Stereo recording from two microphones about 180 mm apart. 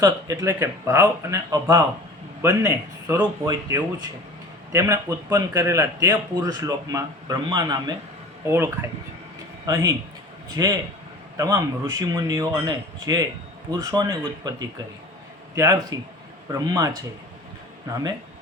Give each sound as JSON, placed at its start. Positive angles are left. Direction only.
{"t": 0.0, "sound": "a man's voice", "side_deg": -20}